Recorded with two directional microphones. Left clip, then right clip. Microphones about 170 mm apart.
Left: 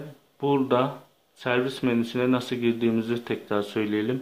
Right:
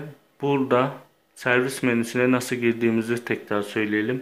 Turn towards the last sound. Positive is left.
turn(degrees=5)  # may be behind; listen again after turning